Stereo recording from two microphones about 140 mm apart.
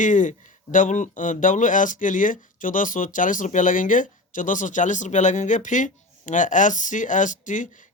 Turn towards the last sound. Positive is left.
turn(degrees=65)  # may be behind; listen again after turning